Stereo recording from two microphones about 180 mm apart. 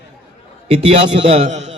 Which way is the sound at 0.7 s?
30° right (ahead or behind).